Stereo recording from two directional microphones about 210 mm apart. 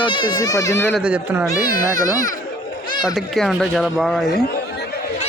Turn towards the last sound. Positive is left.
turn(degrees=0)  # may be behind; listen again after turning